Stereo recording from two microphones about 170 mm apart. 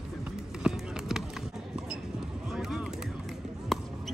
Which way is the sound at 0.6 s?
5° right (ahead or behind).